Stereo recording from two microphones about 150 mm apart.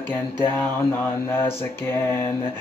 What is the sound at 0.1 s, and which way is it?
Mantra, 15° left (ahead or behind).